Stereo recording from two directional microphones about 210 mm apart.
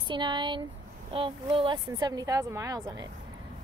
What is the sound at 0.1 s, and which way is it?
Speech, 20° right (ahead or behind).